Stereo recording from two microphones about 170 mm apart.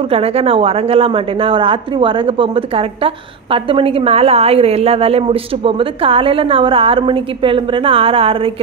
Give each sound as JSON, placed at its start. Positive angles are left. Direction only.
{"t": 0.1, "sound": "a woman's voice", "side_deg": -35}